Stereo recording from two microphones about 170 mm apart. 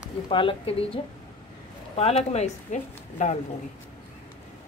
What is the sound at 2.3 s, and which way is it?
Speech, 45° left (ahead or behind).